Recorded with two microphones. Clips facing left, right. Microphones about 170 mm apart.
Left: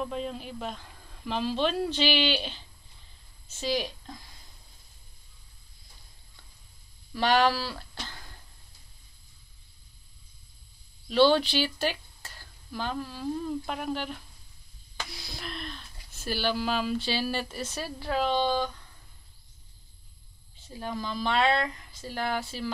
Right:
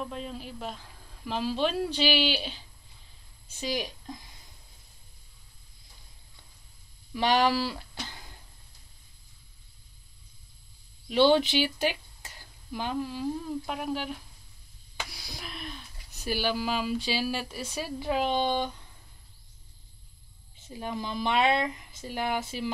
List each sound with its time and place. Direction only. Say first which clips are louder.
0.0 s speech: left 3 dB; centre (ahead or behind)
7.2 s speech: even; 15° right (ahead or behind)
11.1 s speech: even; 15° right (ahead or behind)
20.8 s speech: even; 20° right (ahead or behind)